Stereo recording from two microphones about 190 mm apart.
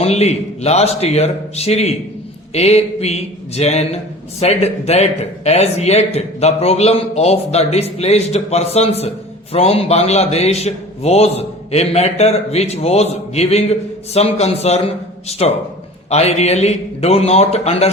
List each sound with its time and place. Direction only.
0.0 s a man's voice: 35° left (ahead or behind)